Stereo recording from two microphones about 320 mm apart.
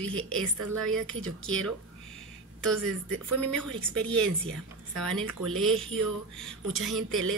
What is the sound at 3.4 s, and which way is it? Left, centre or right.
A woman's voice, centre.